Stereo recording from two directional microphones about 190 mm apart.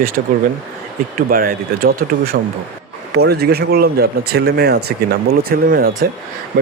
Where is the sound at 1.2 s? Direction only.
45° right (ahead or behind).